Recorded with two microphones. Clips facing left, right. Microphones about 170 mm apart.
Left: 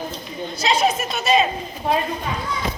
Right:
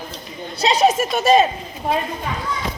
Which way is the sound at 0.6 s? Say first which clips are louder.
Right 4 dB; 35° right (ahead or behind).